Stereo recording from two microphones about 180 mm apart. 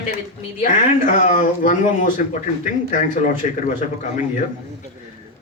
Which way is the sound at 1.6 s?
45° left (ahead or behind).